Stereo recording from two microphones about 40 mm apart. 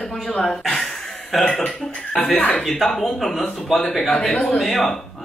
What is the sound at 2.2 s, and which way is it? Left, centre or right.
Speech, left.